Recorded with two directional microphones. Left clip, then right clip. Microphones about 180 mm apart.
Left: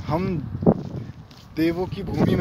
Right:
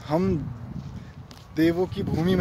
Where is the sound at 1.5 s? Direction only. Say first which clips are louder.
Right 1 dB; 20° right (ahead or behind).